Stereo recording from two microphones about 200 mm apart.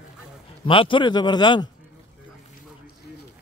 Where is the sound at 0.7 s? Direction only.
25° left (ahead or behind).